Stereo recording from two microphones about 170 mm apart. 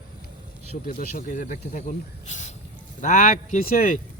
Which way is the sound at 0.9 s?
50° left (ahead or behind).